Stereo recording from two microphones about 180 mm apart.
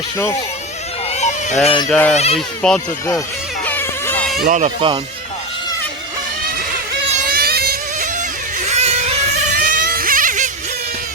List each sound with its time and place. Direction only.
1.1 s a sound: 40° left (ahead or behind)
1.6 s speech: 30° left (ahead or behind)
1.9 s speech: 5° left (ahead or behind)
2.1 s speech: 35° left (ahead or behind)
2.6 s speech: 5° left (ahead or behind)
3.7 s a sound: 10° left (ahead or behind)
4.4 s speech: 45° right (ahead or behind)
7.3 s motorboat: 60° right (ahead or behind)
8.6 s a sound: 40° right (ahead or behind)